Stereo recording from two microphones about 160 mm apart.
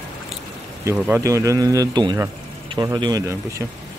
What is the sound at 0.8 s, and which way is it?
A man's voice, 10° right (ahead or behind).